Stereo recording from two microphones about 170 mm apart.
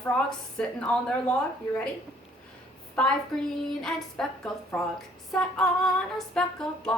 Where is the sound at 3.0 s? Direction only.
5° left (ahead or behind).